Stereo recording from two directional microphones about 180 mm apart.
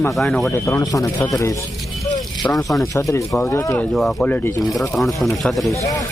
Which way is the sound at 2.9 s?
15° left (ahead or behind).